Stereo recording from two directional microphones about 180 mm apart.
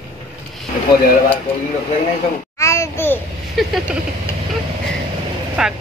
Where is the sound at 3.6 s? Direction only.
Centre (ahead or behind).